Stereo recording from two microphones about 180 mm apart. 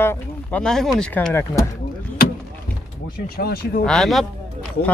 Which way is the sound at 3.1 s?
55° left (ahead or behind).